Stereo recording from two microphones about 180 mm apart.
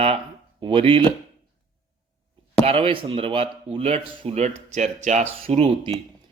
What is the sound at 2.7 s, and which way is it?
Speech, 30° right (ahead or behind).